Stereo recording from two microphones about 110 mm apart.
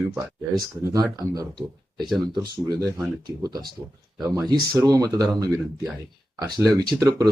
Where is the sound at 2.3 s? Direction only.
40° right (ahead or behind).